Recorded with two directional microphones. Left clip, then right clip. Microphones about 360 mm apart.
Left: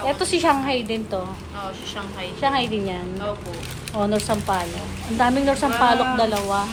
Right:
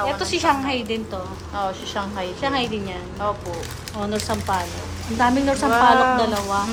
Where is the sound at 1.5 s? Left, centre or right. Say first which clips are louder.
Right 7 dB; right.